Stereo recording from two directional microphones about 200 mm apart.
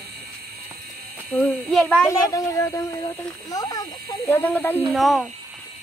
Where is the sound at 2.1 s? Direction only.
15° left (ahead or behind).